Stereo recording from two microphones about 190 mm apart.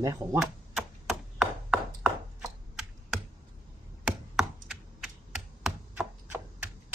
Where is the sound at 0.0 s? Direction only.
15° right (ahead or behind).